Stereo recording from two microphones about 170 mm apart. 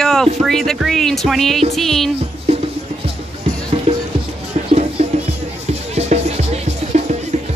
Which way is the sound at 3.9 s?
35° right (ahead or behind).